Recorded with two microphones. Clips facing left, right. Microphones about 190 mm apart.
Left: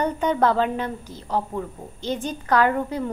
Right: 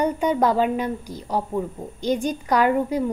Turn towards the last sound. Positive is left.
turn(degrees=-10)  # may be behind; listen again after turning